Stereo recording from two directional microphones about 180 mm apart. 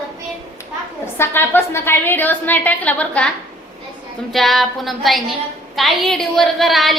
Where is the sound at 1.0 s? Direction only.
15° left (ahead or behind).